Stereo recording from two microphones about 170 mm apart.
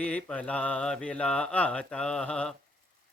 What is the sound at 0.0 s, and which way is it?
Speech, 5° left (ahead or behind).